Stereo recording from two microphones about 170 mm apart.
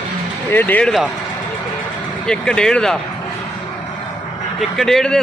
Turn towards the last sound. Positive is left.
turn(degrees=5)  # may be behind; listen again after turning